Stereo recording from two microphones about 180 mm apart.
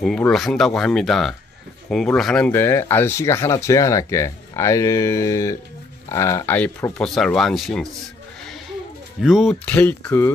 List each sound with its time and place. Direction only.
0.0 s speech: 5° left (ahead or behind)
9.2 s speech: 5° right (ahead or behind)